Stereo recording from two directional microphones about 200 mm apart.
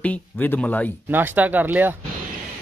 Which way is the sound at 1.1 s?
10° right (ahead or behind).